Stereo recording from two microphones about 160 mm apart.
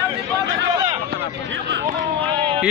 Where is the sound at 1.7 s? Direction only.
70° right (ahead or behind).